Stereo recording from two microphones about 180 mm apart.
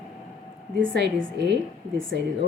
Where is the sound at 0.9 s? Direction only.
70° right (ahead or behind).